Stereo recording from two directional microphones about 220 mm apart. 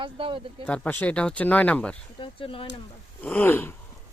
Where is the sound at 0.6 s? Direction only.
5° left (ahead or behind).